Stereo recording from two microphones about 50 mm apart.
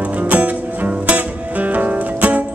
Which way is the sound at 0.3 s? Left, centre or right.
Right.